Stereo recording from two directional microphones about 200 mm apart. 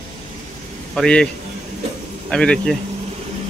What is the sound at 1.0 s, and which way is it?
Speech, 5° left (ahead or behind).